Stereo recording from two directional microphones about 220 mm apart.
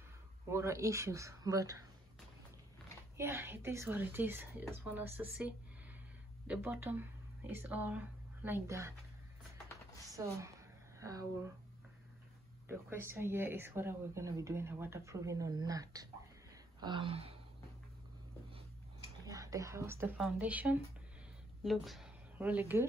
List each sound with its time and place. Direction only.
0.5 s speech: 10° right (ahead or behind)
3.2 s speech: 10° right (ahead or behind)
10.2 s speech: 15° right (ahead or behind)
12.6 s speech: 10° right (ahead or behind)
16.8 s a sound: 20° right (ahead or behind)
19.2 s speech: 15° right (ahead or behind)